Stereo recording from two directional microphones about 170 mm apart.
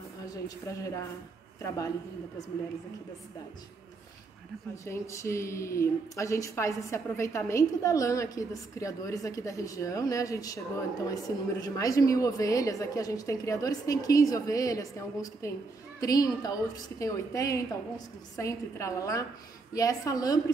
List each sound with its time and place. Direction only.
0.2 s a woman's voice: 20° left (ahead or behind)
4.8 s speech: 15° left (ahead or behind)